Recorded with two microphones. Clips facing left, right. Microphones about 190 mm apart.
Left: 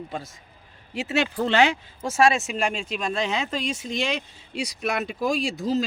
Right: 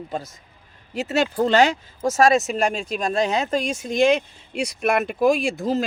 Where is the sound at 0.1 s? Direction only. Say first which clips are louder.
Right 4 dB; 40° right (ahead or behind).